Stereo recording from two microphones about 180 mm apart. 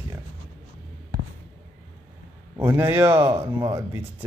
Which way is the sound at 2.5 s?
10° right (ahead or behind).